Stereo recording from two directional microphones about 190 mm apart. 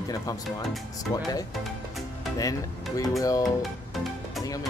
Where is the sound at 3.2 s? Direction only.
20° left (ahead or behind).